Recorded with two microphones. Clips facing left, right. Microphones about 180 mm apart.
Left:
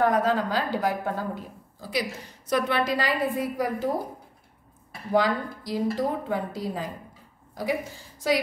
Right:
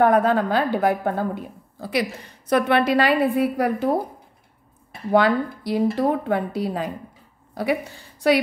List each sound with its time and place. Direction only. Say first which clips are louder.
0.0 s a woman's voice: right 5 dB; 60° right (ahead or behind)
5.1 s a woman's voice: right 5 dB; 65° right (ahead or behind)